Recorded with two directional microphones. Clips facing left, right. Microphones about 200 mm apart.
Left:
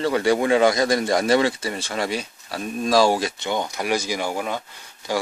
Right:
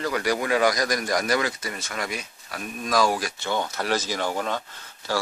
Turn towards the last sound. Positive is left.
turn(degrees=15)  # may be behind; listen again after turning